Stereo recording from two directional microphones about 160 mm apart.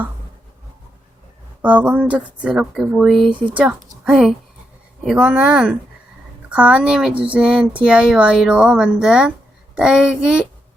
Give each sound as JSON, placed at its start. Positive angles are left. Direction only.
{"t": 1.6, "sound": "a child's voice", "side_deg": -10}